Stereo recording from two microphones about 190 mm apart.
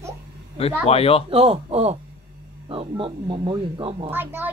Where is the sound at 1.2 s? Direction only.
30° right (ahead or behind).